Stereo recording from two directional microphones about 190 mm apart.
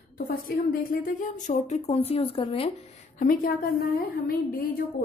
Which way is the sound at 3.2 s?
50° left (ahead or behind).